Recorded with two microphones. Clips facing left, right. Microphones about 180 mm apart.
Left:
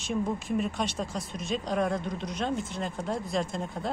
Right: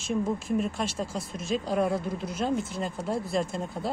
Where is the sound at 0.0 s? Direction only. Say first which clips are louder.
Right 2 dB; centre (ahead or behind).